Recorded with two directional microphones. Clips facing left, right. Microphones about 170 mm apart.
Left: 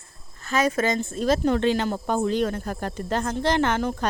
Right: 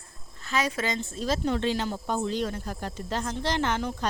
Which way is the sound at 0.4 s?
50° left (ahead or behind).